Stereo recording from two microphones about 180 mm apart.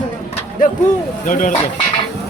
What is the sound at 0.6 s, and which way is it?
Speech, 50° left (ahead or behind).